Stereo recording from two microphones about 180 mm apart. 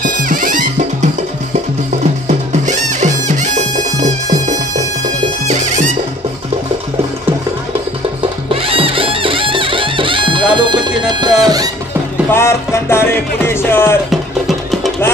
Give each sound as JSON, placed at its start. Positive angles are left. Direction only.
{"t": 0.0, "sound": "music", "side_deg": -50}
{"t": 2.2, "sound": "music", "side_deg": -40}
{"t": 8.6, "sound": "music", "side_deg": -30}
{"t": 12.3, "sound": "music", "side_deg": 15}